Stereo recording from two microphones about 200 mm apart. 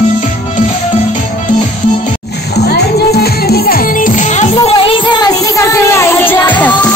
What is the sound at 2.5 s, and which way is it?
Music, 55° left (ahead or behind).